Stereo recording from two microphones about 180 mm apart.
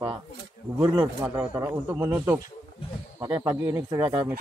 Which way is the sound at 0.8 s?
25° right (ahead or behind).